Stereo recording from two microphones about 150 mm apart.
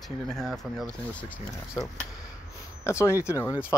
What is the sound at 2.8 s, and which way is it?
Speech, 20° left (ahead or behind).